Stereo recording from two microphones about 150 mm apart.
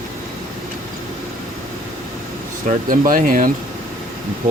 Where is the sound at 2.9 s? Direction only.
65° right (ahead or behind).